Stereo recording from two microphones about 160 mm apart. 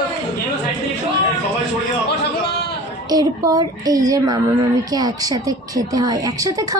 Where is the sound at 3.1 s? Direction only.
25° right (ahead or behind).